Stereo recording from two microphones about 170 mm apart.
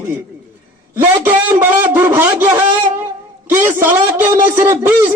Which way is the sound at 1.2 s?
15° right (ahead or behind).